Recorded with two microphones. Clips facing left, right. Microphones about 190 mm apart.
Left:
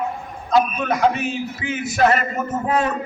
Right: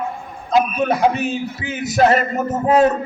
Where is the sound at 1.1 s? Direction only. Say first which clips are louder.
Right 3 dB; 35° right (ahead or behind).